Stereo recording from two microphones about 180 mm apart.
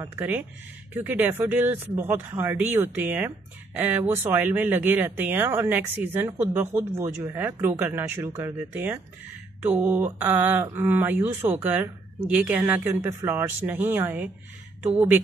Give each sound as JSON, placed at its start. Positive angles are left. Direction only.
{"t": 0.0, "sound": "speech", "side_deg": -15}